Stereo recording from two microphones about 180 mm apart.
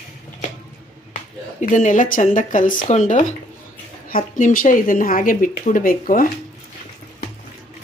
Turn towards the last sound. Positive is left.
turn(degrees=50)  # may be behind; listen again after turning